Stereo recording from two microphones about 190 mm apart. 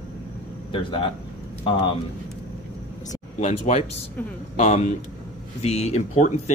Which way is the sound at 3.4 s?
35° left (ahead or behind).